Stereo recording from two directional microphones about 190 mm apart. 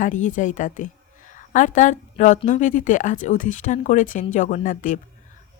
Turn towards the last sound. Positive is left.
turn(degrees=45)  # may be behind; listen again after turning